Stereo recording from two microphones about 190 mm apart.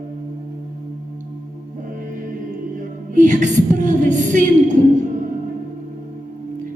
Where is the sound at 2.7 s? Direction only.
40° right (ahead or behind).